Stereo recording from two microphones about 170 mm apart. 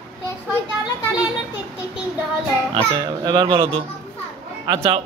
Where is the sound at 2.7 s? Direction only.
25° right (ahead or behind).